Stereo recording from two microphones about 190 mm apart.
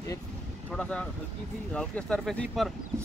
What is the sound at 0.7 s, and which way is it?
Speech, 5° left (ahead or behind).